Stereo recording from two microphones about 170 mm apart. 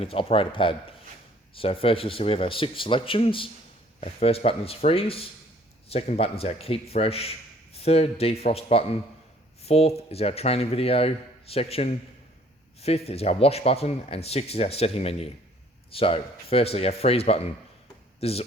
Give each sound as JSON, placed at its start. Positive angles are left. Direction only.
{"t": 0.0, "sound": "a man's voice", "side_deg": 35}